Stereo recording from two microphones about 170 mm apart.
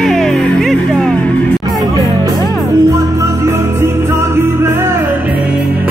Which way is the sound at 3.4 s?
15° right (ahead or behind).